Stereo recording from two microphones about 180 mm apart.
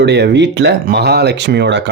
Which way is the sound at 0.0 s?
70° right (ahead or behind).